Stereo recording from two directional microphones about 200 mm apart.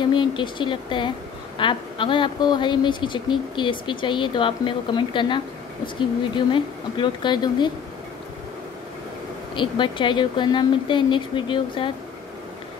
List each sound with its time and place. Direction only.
0.0 s speech: 25° left (ahead or behind)
9.6 s speech: 25° left (ahead or behind)